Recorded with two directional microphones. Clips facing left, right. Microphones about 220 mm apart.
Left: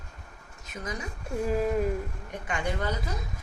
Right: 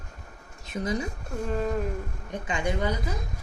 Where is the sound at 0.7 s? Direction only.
30° right (ahead or behind).